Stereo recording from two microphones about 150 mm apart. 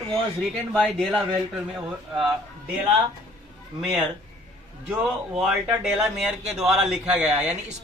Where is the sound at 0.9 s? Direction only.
Centre (ahead or behind).